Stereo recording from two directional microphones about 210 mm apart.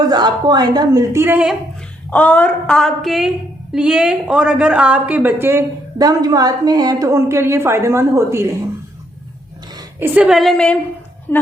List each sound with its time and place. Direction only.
0.1 s a woman's voice: 20° right (ahead or behind)
2.0 s a woman's voice: 5° left (ahead or behind); by 8.4 s 15° right (ahead or behind)
9.7 s a woman's voice: 10° right (ahead or behind); by 11.4 s 10° left (ahead or behind)